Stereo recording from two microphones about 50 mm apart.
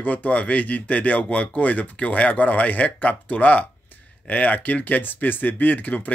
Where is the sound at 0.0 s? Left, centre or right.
Left.